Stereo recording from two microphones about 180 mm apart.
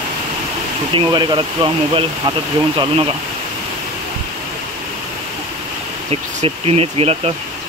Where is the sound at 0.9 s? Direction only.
25° right (ahead or behind).